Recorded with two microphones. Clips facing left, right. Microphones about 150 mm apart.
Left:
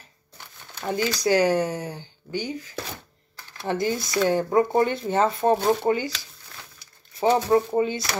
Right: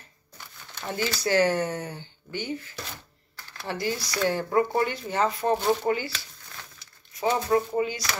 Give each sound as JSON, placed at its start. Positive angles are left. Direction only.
{"t": 0.7, "sound": "speech", "side_deg": 15}
{"t": 7.4, "sound": "speech", "side_deg": 30}